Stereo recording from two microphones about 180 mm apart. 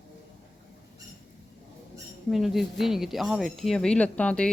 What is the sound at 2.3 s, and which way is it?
Speech, centre (ahead or behind).